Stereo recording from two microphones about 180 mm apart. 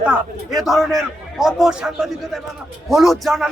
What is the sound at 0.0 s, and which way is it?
A man's voice, 5° right (ahead or behind).